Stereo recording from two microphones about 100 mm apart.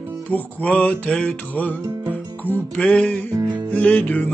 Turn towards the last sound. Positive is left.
turn(degrees=15)  # may be behind; listen again after turning